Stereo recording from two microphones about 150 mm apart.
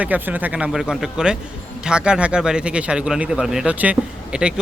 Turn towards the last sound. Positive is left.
turn(degrees=-5)  # may be behind; listen again after turning